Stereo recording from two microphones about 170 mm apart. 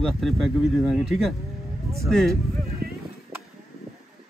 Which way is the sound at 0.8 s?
Centre (ahead or behind).